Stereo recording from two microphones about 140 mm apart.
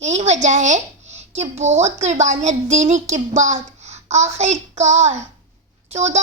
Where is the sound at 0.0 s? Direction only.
50° right (ahead or behind).